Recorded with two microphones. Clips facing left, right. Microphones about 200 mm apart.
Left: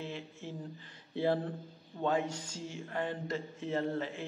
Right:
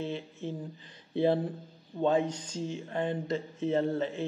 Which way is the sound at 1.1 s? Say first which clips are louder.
Right 5 dB; 20° right (ahead or behind).